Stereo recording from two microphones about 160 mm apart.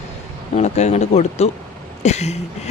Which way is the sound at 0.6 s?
45° left (ahead or behind).